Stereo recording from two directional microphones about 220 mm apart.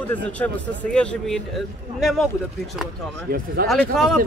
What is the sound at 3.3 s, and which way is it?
Speech, 45° right (ahead or behind).